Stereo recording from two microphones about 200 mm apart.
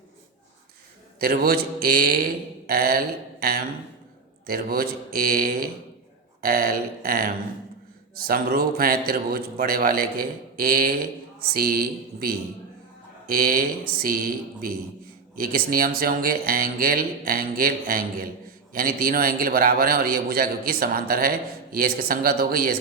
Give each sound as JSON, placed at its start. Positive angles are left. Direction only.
{"t": 1.2, "sound": "a man's voice", "side_deg": -50}
{"t": 8.3, "sound": "a man's voice", "side_deg": -50}